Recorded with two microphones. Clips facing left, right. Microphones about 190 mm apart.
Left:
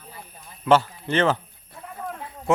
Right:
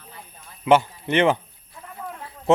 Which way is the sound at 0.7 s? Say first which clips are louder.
Right 1 dB; 15° right (ahead or behind).